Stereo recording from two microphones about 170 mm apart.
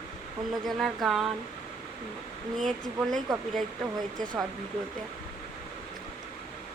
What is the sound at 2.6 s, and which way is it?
Speech, centre (ahead or behind).